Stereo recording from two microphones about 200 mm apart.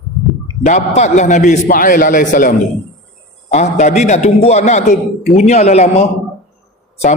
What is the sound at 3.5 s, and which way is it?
A man's voice, 35° left (ahead or behind).